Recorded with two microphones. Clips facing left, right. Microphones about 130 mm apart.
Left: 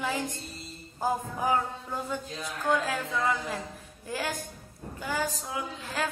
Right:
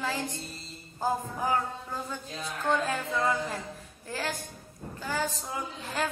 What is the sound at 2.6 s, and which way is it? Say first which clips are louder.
Speech: left 1 dB; 5° left (ahead or behind).